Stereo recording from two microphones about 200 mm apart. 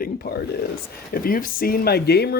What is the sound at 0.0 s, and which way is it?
Speech, 50° left (ahead or behind).